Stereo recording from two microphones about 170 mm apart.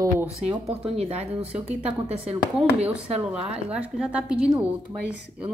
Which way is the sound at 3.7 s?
5° right (ahead or behind).